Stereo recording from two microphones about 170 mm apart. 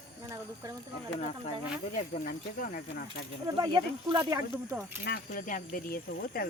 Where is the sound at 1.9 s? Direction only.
50° left (ahead or behind).